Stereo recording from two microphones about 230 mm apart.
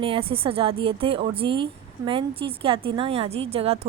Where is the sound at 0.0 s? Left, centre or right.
Right.